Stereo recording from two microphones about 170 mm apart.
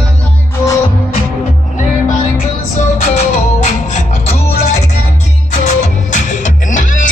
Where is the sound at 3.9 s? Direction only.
40° left (ahead or behind).